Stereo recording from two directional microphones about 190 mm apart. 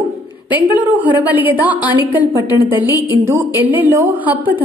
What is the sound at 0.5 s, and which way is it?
A woman's voice, 10° right (ahead or behind).